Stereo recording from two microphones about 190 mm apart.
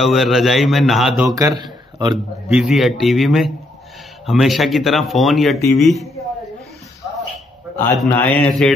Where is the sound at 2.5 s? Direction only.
5° right (ahead or behind).